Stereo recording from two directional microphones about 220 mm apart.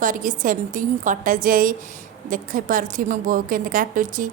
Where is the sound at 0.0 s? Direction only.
35° right (ahead or behind).